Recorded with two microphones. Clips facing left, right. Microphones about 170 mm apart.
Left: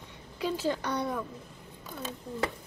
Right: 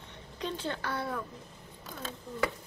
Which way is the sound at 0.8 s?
20° left (ahead or behind).